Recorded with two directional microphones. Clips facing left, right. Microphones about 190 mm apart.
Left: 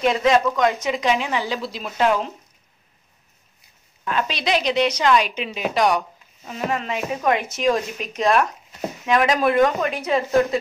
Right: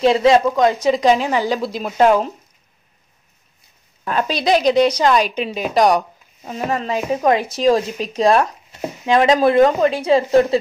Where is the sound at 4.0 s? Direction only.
40° right (ahead or behind).